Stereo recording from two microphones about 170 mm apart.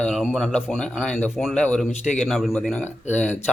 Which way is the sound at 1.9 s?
45° left (ahead or behind).